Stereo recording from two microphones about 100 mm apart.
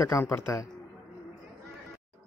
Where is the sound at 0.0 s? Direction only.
30° left (ahead or behind).